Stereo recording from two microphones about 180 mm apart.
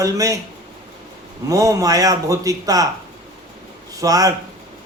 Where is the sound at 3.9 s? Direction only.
20° right (ahead or behind).